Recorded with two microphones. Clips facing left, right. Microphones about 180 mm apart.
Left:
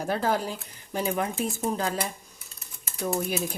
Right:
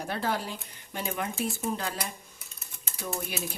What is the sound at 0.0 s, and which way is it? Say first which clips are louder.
Speech: left 5 dB; 45° left (ahead or behind).